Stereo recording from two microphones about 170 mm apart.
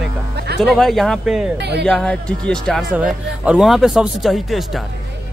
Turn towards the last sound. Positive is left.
turn(degrees=0)  # may be behind; listen again after turning